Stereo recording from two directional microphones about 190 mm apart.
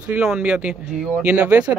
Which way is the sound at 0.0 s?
10° right (ahead or behind).